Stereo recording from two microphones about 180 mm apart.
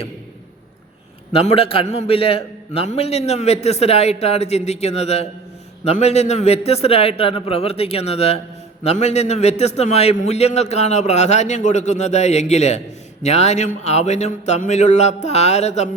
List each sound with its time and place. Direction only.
1.3 s a man's voice: 35° left (ahead or behind)